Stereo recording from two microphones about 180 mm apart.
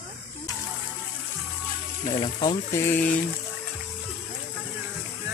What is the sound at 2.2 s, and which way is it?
Cricket, 25° left (ahead or behind).